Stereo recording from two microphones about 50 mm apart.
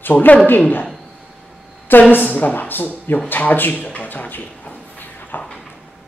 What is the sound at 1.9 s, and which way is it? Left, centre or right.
A woman's voice, left.